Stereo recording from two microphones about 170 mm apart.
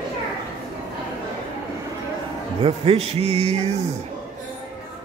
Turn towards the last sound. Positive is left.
turn(degrees=-40)  # may be behind; listen again after turning